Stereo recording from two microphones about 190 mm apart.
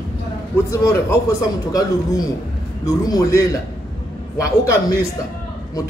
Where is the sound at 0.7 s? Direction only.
15° left (ahead or behind).